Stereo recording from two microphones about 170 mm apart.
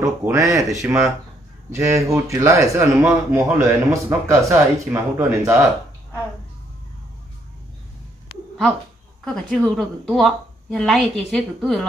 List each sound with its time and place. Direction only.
0.0 s speech: 15° right (ahead or behind)
9.2 s a woman's voice: 5° left (ahead or behind)